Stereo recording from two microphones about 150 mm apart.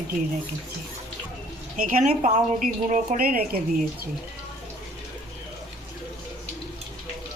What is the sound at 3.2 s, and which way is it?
Speech, 80° right.